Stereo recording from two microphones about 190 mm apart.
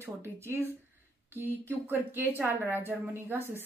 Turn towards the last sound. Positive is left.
turn(degrees=-10)  # may be behind; listen again after turning